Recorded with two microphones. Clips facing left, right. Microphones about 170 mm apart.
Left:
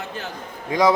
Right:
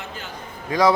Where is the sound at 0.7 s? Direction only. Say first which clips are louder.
Even; 20° left (ahead or behind).